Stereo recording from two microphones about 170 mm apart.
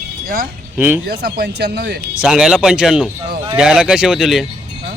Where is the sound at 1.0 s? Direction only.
75° right (ahead or behind).